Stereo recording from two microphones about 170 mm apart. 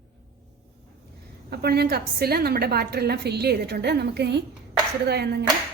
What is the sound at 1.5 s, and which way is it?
A woman's voice, 70° right (ahead or behind).